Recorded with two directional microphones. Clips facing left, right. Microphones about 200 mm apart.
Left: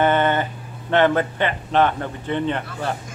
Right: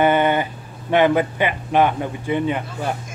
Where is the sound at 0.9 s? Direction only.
10° right (ahead or behind).